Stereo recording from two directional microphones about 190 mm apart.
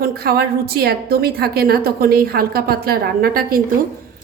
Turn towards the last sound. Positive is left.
turn(degrees=-50)  # may be behind; listen again after turning